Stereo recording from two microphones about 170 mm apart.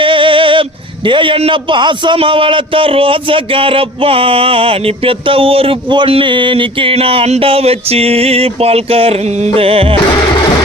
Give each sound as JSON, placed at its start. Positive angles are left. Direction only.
{"t": 0.0, "sound": "speech", "side_deg": -30}